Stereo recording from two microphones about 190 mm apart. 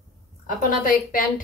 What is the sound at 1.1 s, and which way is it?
Speech, 45° left (ahead or behind).